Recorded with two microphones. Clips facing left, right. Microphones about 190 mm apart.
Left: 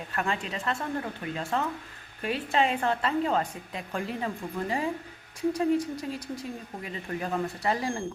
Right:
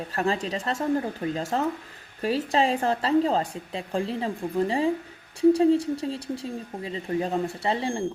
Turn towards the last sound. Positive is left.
turn(degrees=-25)  # may be behind; listen again after turning